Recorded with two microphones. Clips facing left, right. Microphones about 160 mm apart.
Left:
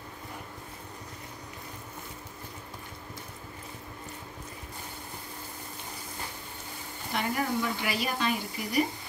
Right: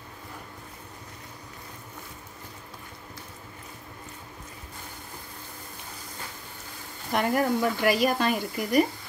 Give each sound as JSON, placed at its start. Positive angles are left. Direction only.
{"t": 7.2, "sound": "speech", "side_deg": -50}